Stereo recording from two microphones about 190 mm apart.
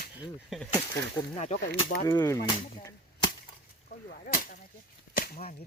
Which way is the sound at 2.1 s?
15° left (ahead or behind).